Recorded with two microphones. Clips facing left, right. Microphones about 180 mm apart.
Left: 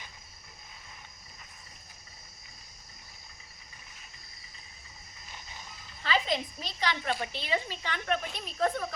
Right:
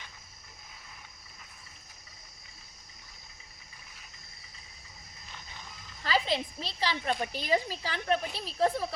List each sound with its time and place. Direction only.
6.0 s a woman's voice: 35° right (ahead or behind)